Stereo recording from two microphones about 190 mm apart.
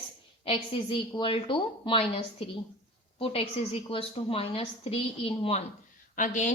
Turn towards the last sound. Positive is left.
turn(degrees=40)  # may be behind; listen again after turning